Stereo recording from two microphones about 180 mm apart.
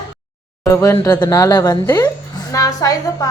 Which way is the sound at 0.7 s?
15° left (ahead or behind).